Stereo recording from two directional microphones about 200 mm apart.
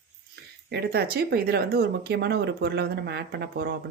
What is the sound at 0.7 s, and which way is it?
Speech, 55° right (ahead or behind).